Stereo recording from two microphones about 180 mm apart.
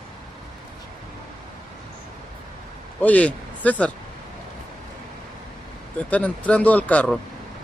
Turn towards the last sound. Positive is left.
turn(degrees=10)  # may be behind; listen again after turning